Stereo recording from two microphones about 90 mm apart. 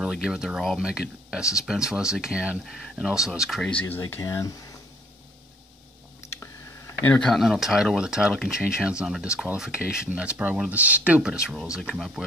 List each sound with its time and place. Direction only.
0.0 s speech: 5° right (ahead or behind)
3.8 s speech: 30° left (ahead or behind)
7.0 s speech: 15° left (ahead or behind)
7.2 s speech: centre (ahead or behind)